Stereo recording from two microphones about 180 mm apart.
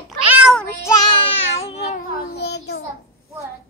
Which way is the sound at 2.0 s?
60° left (ahead or behind).